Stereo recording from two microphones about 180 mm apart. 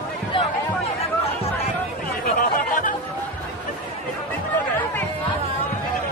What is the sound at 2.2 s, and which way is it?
Chatter, 50° left (ahead or behind).